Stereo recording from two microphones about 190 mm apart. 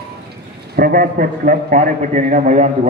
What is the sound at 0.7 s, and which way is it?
A man's voice, 50° right (ahead or behind).